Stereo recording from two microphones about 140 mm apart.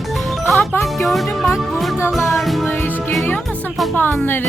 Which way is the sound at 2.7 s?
15° left (ahead or behind).